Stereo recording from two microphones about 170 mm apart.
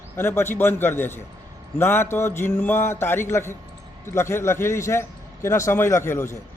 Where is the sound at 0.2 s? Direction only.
15° left (ahead or behind).